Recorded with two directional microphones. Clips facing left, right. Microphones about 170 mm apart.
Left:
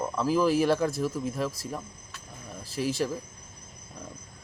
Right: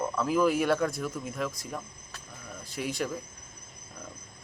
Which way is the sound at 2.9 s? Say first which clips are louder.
Left 4 dB; centre (ahead or behind).